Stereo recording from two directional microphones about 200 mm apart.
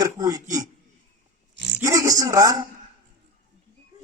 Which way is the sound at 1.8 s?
15° right (ahead or behind).